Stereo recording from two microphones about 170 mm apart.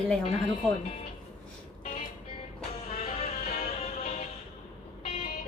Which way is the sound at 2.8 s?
35° left (ahead or behind).